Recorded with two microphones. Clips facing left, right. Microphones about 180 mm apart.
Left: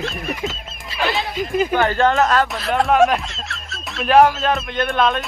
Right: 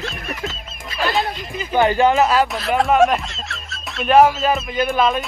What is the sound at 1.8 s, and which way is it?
Speech, 15° right (ahead or behind).